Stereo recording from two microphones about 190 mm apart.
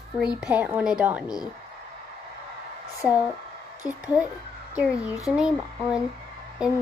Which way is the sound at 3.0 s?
5° right (ahead or behind).